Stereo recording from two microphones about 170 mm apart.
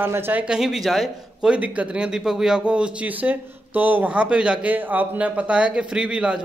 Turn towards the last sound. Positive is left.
turn(degrees=-5)  # may be behind; listen again after turning